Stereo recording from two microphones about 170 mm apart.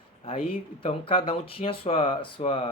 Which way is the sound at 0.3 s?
30° left (ahead or behind).